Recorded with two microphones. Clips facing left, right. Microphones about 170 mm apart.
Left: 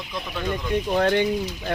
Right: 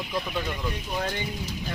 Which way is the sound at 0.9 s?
75° left (ahead or behind).